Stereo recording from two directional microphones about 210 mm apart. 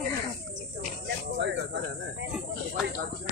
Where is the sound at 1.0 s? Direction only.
55° right (ahead or behind).